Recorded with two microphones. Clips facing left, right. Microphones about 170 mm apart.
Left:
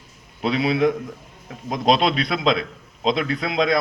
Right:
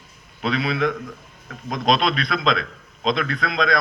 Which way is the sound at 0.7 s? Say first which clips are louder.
Left 4 dB; 30° left (ahead or behind).